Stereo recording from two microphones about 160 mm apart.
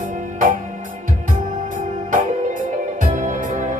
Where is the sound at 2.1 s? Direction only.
55° right (ahead or behind).